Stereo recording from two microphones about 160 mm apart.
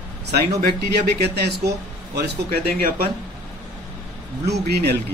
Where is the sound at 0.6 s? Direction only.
85° right.